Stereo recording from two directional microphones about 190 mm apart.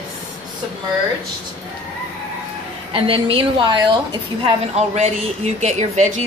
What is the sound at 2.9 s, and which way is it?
A woman's voice, 30° right (ahead or behind).